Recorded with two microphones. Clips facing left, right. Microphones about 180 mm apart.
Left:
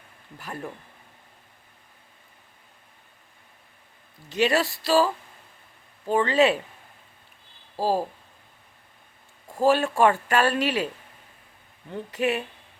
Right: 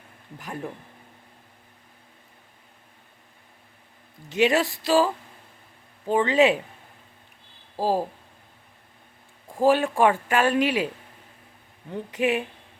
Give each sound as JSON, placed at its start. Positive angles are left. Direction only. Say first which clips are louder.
{"t": 0.3, "sound": "speech", "louder": "right 1 dB", "side_deg": -15}
{"t": 4.3, "sound": "speech", "louder": "right 2 dB", "side_deg": -15}
{"t": 7.8, "sound": "speech", "louder": "even", "side_deg": -15}
{"t": 9.5, "sound": "speech", "louder": "right 1 dB", "side_deg": -15}
{"t": 11.9, "sound": "speech", "louder": "right 1 dB", "side_deg": -15}